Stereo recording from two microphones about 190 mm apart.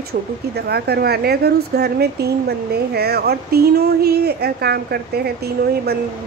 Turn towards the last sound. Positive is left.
turn(degrees=-55)  # may be behind; listen again after turning